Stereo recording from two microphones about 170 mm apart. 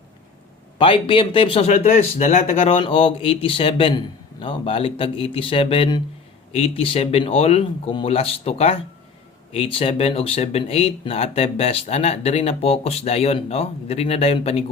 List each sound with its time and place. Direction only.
0.8 s speech: 30° left (ahead or behind)